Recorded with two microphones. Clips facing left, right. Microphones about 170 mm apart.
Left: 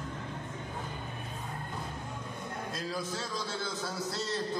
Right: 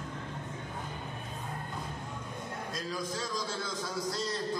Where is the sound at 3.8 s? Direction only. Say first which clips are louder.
Right 1 dB; 30° left (ahead or behind).